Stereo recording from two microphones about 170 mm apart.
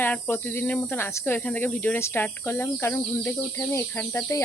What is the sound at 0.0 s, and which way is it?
Speech, 10° left (ahead or behind).